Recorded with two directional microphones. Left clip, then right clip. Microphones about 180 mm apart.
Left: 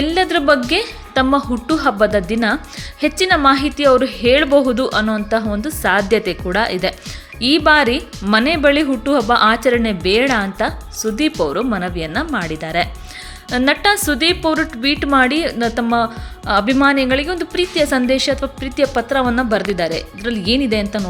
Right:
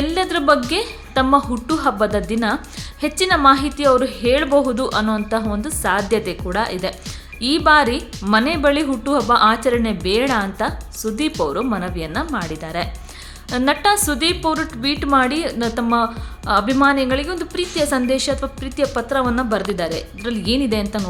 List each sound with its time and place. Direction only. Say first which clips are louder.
0.0 s a woman's voice: left 3 dB; 15° left (ahead or behind)